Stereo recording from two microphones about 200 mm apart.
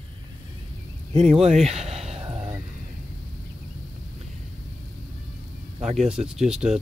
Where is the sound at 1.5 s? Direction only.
30° right (ahead or behind).